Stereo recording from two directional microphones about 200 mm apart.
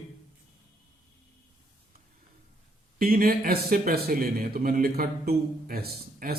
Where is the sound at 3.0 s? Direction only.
45° right (ahead or behind).